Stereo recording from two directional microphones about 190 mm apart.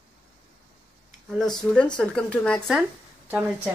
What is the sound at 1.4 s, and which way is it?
Speech, centre (ahead or behind).